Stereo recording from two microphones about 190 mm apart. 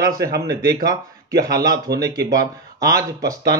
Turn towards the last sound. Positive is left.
turn(degrees=-20)  # may be behind; listen again after turning